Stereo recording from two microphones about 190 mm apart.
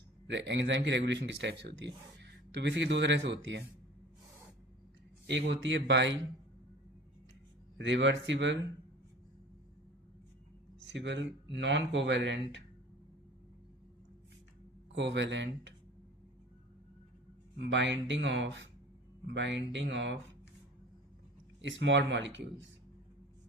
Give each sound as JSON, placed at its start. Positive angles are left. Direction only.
{"t": 0.3, "sound": "speech", "side_deg": -70}
{"t": 5.2, "sound": "speech", "side_deg": -70}
{"t": 7.8, "sound": "speech", "side_deg": -70}
{"t": 10.8, "sound": "speech", "side_deg": -70}
{"t": 14.9, "sound": "speech", "side_deg": -70}
{"t": 17.6, "sound": "speech", "side_deg": -70}
{"t": 21.6, "sound": "speech", "side_deg": -75}